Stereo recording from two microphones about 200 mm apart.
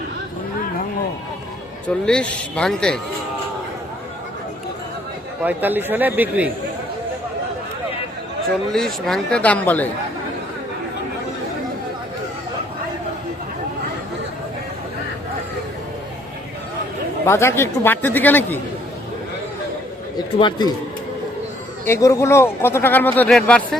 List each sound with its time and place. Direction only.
2.0 s speech: 5° left (ahead or behind)
5.4 s a man's voice: 10° right (ahead or behind)
8.7 s speech: centre (ahead or behind)
17.2 s speech: 15° left (ahead or behind)
20.1 s speech: 20° left (ahead or behind)
21.8 s speech: 15° left (ahead or behind)